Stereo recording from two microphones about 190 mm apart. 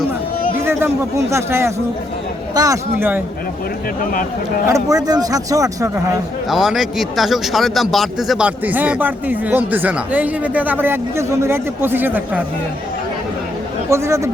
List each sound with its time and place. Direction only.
0.6 s a man's voice: 10° right (ahead or behind)
4.0 s speech: 45° left (ahead or behind)
4.7 s speech: 20° right (ahead or behind)
6.5 s a man's voice: centre (ahead or behind)
13.9 s a man's voice: 15° right (ahead or behind)